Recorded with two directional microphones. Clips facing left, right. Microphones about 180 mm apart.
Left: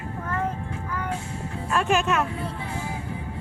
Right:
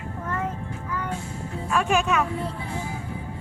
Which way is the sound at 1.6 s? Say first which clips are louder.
Even; centre (ahead or behind).